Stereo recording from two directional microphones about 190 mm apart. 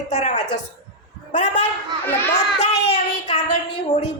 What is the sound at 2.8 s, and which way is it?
Child singing, 35° left (ahead or behind).